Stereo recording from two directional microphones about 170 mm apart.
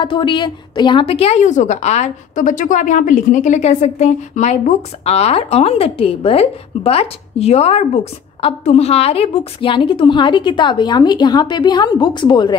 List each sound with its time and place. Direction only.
0.0 s a woman's voice: 30° left (ahead or behind)